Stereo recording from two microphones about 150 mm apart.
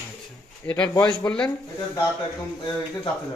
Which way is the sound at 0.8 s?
25° left (ahead or behind).